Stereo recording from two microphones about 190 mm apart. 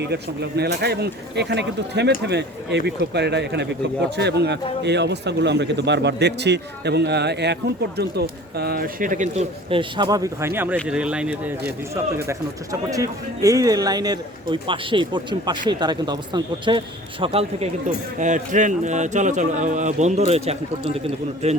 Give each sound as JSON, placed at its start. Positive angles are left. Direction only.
{"t": 0.0, "sound": "speech", "side_deg": -60}